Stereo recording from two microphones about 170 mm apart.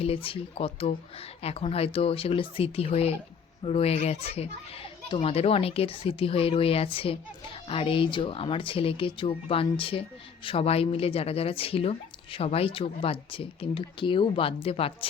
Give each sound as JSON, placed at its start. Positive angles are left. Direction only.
{"t": 0.0, "sound": "a woman's voice", "side_deg": 35}